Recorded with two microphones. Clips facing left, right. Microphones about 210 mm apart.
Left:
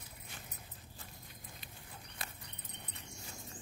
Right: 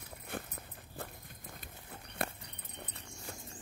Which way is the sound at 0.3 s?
55° right (ahead or behind).